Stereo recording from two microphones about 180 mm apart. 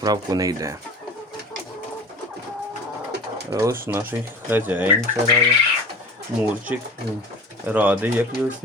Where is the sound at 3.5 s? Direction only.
15° right (ahead or behind).